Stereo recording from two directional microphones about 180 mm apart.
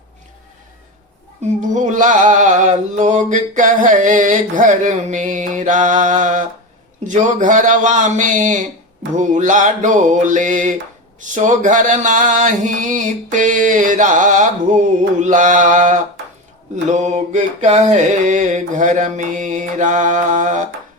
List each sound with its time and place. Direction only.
1.7 s male singing: 45° right (ahead or behind)